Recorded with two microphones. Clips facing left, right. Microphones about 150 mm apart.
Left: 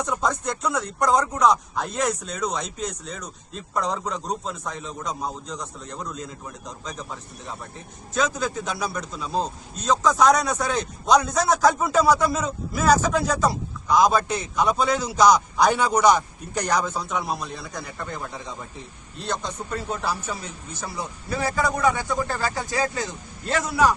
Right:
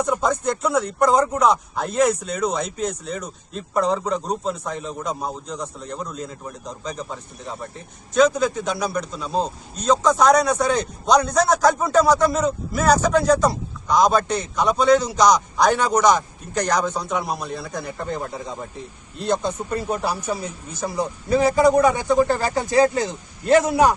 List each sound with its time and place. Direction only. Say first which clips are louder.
0.0 s a man's voice: right 4 dB; centre (ahead or behind)
16.9 s a man's voice: right 2 dB; centre (ahead or behind)
19.4 s a man's voice: right 6 dB; 10° right (ahead or behind)